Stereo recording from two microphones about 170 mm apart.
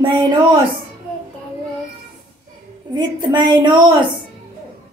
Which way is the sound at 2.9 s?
25° right (ahead or behind).